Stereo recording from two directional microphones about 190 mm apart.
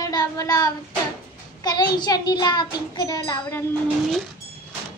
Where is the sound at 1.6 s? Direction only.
20° left (ahead or behind).